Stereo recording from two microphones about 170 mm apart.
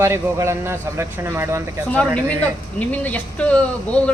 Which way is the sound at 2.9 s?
10° left (ahead or behind).